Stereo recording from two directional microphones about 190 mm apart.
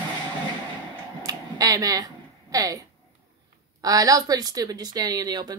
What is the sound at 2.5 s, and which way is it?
Speech, 20° right (ahead or behind).